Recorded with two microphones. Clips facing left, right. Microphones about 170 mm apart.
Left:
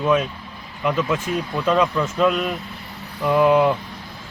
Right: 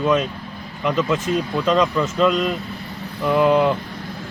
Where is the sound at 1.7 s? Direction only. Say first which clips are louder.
Even; 10° left (ahead or behind).